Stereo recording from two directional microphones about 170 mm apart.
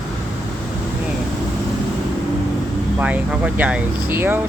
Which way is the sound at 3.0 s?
10° right (ahead or behind).